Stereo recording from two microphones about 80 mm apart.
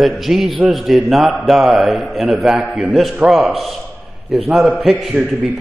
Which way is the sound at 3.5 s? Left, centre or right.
Centre.